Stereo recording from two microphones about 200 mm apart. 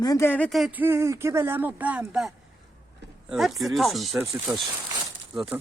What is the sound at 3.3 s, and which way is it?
Speech, centre (ahead or behind).